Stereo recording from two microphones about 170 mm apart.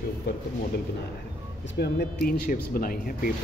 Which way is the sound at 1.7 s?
70° left (ahead or behind).